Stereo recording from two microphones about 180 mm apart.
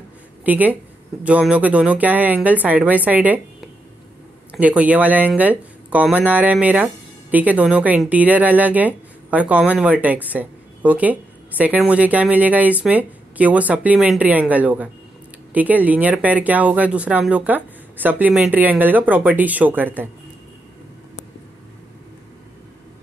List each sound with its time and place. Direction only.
0.5 s speech: 10° right (ahead or behind)